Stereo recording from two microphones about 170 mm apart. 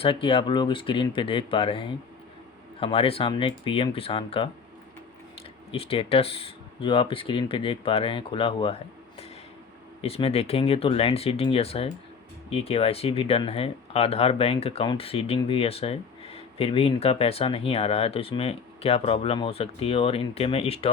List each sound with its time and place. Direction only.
0.0 s speech: 30° left (ahead or behind)
5.7 s speech: 35° left (ahead or behind)
10.0 s speech: 35° left (ahead or behind)